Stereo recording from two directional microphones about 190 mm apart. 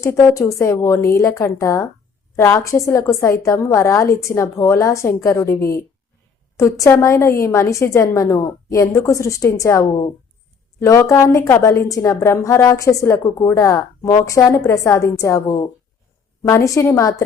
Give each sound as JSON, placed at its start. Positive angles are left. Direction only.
{"t": 0.0, "sound": "a woman's voice", "side_deg": 15}